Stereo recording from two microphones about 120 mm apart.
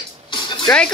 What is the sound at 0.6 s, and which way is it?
Speech, 5° left (ahead or behind).